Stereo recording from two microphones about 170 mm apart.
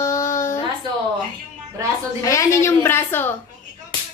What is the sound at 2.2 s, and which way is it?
A woman's voice, 20° left (ahead or behind).